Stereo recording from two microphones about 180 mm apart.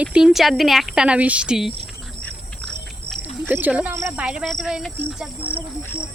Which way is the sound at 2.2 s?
Centre (ahead or behind).